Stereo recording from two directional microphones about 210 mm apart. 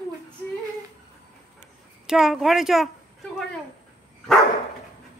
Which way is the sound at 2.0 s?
Centre (ahead or behind).